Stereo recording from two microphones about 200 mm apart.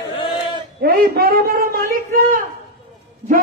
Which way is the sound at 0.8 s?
50° right (ahead or behind).